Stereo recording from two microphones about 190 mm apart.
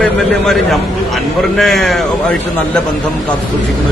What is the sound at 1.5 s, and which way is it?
Speech, centre (ahead or behind).